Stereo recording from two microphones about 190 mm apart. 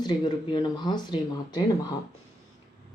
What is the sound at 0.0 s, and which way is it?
Speech, 20° left (ahead or behind).